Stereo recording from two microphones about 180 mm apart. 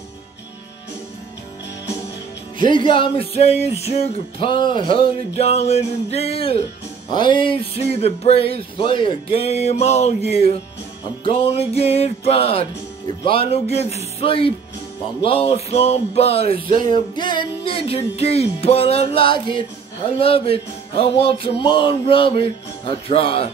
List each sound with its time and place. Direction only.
2.6 s music: 25° left (ahead or behind)